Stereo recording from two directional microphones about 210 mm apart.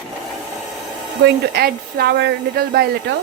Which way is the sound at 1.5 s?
50° right (ahead or behind).